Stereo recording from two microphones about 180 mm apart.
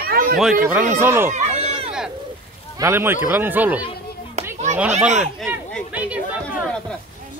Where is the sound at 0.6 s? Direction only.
10° right (ahead or behind).